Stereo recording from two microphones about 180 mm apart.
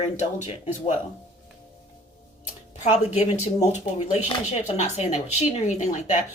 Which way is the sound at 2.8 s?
40° left (ahead or behind).